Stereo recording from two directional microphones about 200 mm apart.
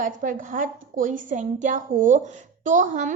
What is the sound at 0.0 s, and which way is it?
A woman's voice, 40° right (ahead or behind).